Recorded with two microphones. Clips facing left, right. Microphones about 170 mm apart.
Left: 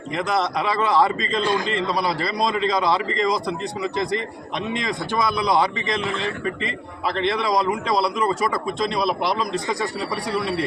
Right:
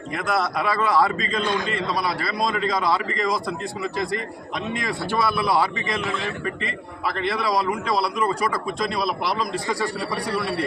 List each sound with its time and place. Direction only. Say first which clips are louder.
0.3 s a man's voice: even; 25° left (ahead or behind)
4.7 s a man's voice: even; 20° left (ahead or behind)
7.4 s a man's voice: left 2 dB; 20° left (ahead or behind)
9.5 s a man's voice: left 1 dB; 20° left (ahead or behind)